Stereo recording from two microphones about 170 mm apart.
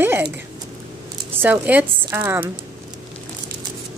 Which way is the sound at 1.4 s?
10° right (ahead or behind).